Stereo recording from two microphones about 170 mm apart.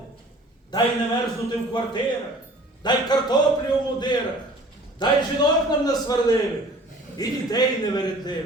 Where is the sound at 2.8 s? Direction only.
25° left (ahead or behind).